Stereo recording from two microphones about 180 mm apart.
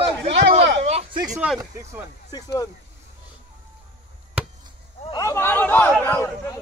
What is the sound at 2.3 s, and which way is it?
Speech, 20° left (ahead or behind).